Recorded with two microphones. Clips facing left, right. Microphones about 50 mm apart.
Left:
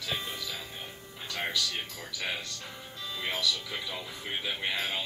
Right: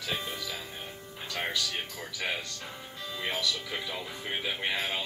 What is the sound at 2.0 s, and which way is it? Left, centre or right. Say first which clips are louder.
Speech: right 2 dB; centre.